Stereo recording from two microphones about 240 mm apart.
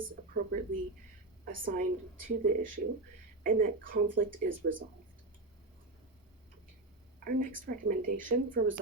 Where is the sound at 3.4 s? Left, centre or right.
Right.